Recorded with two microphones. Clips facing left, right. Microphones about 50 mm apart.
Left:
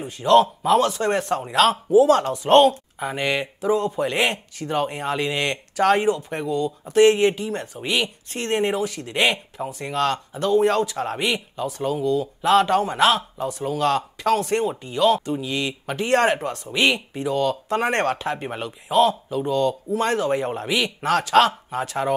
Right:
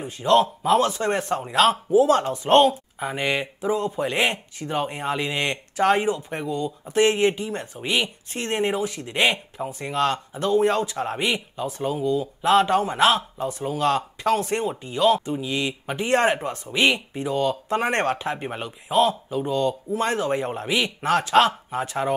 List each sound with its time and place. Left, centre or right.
0.0 s speech: centre
11.6 s speech: right
13.6 s speech: right
14.6 s speech: centre
15.0 s speech: right
15.3 s speech: centre
17.3 s speech: right
18.9 s speech: centre
20.0 s speech: centre